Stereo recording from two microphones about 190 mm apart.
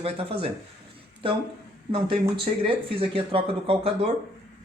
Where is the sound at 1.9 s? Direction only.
30° right (ahead or behind).